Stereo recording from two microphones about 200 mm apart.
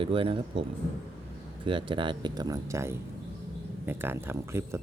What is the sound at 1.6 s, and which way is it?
Speech, 25° right (ahead or behind).